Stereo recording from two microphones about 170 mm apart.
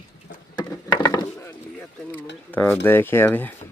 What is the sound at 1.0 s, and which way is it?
Wood, 20° left (ahead or behind).